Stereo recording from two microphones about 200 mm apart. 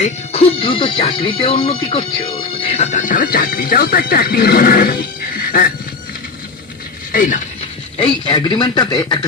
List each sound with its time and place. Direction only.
0.0 s speech: 30° left (ahead or behind); by 5.7 s 45° left (ahead or behind)
7.1 s speech: 40° left (ahead or behind)
7.9 s speech: 25° left (ahead or behind)